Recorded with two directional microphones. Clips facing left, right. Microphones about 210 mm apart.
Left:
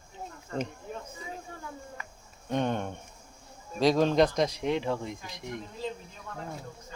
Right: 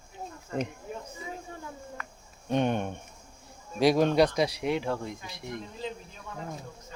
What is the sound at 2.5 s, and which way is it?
Speech, 15° right (ahead or behind).